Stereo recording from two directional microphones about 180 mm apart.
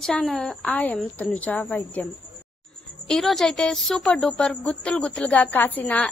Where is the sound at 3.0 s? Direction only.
Centre (ahead or behind).